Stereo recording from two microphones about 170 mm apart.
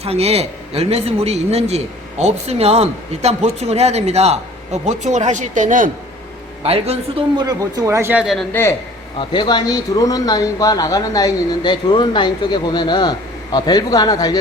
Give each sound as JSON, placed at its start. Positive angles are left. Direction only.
{"t": 0.0, "sound": "a man's voice", "side_deg": -35}
{"t": 6.6, "sound": "a man's voice", "side_deg": -35}
{"t": 7.3, "sound": "speech", "side_deg": -20}
{"t": 8.2, "sound": "a man's voice", "side_deg": 0}
{"t": 9.3, "sound": "speech", "side_deg": 25}